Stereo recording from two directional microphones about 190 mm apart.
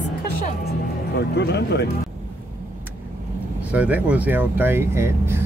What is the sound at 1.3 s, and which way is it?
Speech, 65° left (ahead or behind).